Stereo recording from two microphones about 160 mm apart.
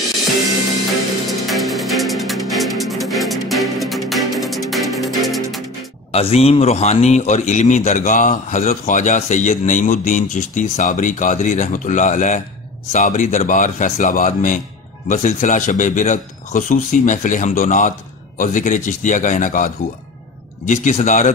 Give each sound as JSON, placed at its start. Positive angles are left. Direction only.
{"t": 1.5, "sound": "music", "side_deg": 0}
{"t": 6.1, "sound": "a man's voice", "side_deg": 40}